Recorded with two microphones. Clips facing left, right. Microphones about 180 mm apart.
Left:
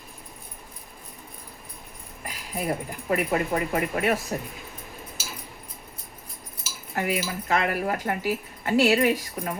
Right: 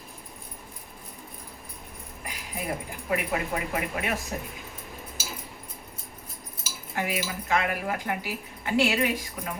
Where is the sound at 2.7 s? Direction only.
40° left (ahead or behind).